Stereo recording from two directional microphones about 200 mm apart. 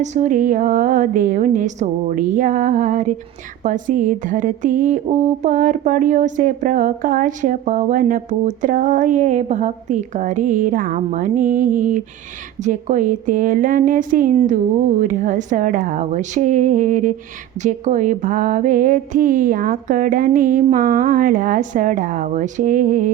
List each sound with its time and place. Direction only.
0.0 s speech: 35° right (ahead or behind)